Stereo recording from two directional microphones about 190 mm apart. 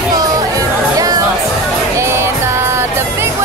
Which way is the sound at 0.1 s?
20° right (ahead or behind).